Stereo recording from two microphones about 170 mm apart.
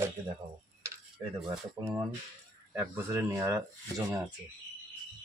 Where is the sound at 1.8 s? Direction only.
20° right (ahead or behind).